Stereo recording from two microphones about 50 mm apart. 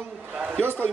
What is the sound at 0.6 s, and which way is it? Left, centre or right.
Speech, right.